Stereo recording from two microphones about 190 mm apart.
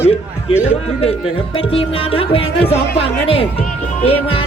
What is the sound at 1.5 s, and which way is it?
Music, 30° left (ahead or behind).